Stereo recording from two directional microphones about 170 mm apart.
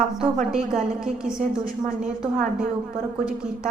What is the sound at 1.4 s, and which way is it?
Speech, 55° right (ahead or behind).